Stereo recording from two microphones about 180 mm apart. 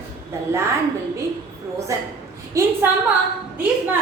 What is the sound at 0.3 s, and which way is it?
Speech, 15° right (ahead or behind).